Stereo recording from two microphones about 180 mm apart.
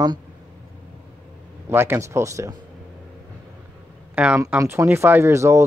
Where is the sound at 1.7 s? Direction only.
15° right (ahead or behind).